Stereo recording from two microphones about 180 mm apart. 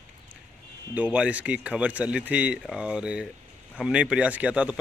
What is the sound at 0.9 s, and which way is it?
Speech, 5° right (ahead or behind).